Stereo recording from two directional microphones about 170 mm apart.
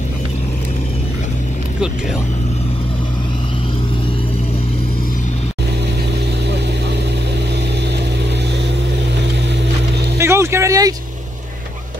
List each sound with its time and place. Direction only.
10.1 s music: 15° right (ahead or behind)